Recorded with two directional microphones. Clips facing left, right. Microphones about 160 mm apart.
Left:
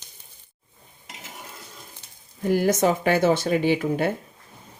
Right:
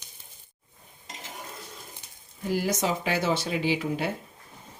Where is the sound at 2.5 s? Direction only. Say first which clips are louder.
Left 7 dB; 50° left (ahead or behind).